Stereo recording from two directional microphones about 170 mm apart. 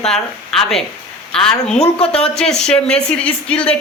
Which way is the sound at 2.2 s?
5° left (ahead or behind).